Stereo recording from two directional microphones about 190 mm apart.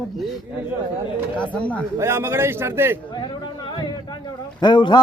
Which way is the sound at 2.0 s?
15° right (ahead or behind).